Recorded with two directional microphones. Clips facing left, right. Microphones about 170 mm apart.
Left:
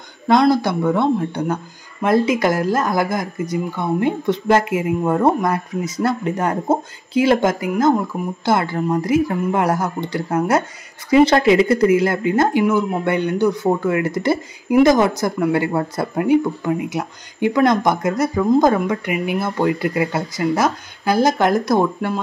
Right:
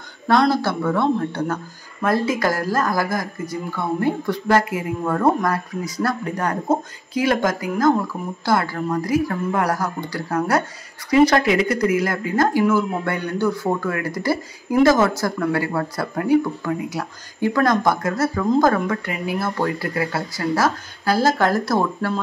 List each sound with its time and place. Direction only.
0.3 s speech: 15° left (ahead or behind)
8.1 s speech: 15° left (ahead or behind)